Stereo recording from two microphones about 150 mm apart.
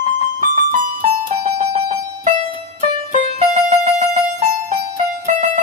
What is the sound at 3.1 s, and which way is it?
Music, 50° right (ahead or behind).